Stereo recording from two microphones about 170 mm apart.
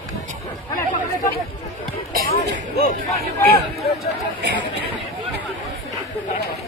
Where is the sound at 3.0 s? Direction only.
20° left (ahead or behind).